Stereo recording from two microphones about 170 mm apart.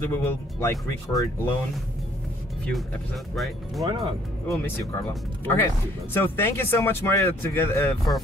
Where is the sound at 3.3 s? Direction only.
Centre (ahead or behind).